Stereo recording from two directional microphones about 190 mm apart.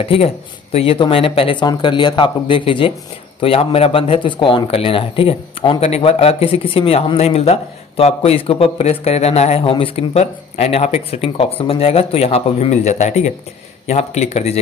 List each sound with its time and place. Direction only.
0.7 s speech: 25° left (ahead or behind)